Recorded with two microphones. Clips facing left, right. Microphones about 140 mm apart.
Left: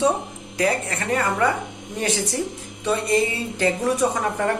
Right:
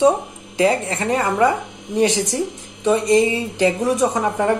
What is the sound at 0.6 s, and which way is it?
A woman's voice, 20° right (ahead or behind).